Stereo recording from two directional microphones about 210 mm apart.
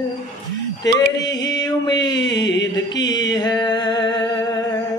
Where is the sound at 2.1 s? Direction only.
55° left (ahead or behind).